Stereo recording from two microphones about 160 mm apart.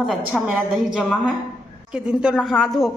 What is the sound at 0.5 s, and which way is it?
A woman's voice, 5° right (ahead or behind).